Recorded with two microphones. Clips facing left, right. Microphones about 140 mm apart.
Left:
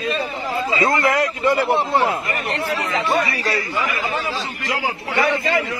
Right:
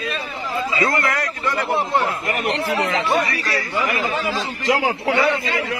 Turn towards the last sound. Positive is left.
turn(degrees=-85)